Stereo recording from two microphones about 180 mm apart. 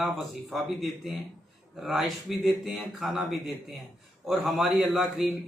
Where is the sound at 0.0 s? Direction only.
Centre (ahead or behind).